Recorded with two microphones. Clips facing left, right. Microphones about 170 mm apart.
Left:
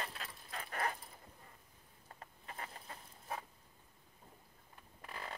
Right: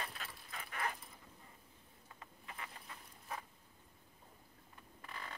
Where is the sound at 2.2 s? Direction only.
40° left (ahead or behind).